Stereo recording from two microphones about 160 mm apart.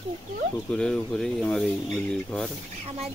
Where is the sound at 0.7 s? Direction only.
5° left (ahead or behind).